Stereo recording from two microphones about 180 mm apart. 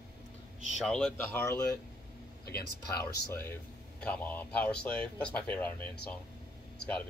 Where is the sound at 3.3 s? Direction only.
10° left (ahead or behind).